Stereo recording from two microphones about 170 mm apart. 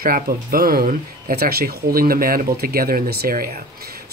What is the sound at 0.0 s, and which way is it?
Speech, 60° right (ahead or behind).